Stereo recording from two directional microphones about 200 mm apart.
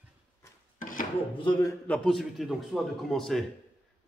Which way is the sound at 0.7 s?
45° left (ahead or behind).